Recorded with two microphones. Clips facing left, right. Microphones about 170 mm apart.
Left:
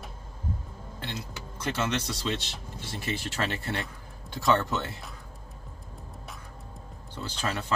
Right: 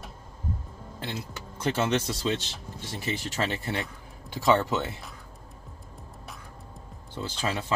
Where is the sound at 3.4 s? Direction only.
15° right (ahead or behind).